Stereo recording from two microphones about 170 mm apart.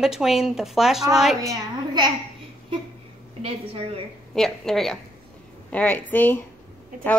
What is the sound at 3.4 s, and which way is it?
Speech, 35° right (ahead or behind).